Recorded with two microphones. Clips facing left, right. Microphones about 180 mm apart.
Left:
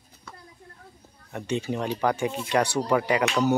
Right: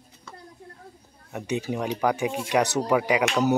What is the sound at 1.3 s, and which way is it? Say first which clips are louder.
Speech: even; 10° right (ahead or behind).